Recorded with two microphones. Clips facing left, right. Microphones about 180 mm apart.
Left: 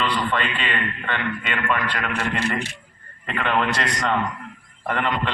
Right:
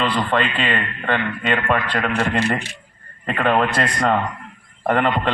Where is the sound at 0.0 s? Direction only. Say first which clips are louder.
Right 4 dB; 50° right (ahead or behind).